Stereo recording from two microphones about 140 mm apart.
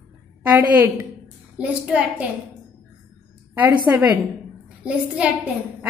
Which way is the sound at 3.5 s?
10° right (ahead or behind).